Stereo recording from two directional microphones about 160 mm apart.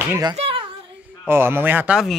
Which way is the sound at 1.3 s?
15° right (ahead or behind).